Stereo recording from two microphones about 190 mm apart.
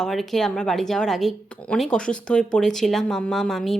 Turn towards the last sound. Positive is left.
turn(degrees=0)  # may be behind; listen again after turning